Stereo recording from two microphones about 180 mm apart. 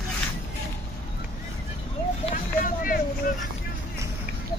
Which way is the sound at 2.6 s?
50° left (ahead or behind).